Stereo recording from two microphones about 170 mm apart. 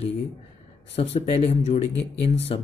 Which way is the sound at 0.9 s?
40° left (ahead or behind).